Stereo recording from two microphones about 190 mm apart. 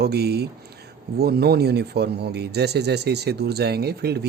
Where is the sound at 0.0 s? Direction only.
60° right (ahead or behind).